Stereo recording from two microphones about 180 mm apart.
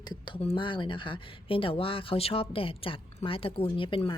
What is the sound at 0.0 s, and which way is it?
Speech, 25° left (ahead or behind).